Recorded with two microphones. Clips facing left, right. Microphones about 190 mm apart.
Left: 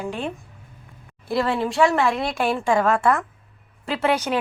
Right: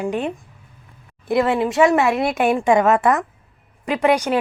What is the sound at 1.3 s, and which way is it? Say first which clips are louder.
A woman's voice: right 4 dB; 20° right (ahead or behind).